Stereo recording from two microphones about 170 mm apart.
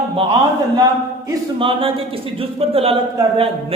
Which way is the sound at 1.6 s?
30° right (ahead or behind).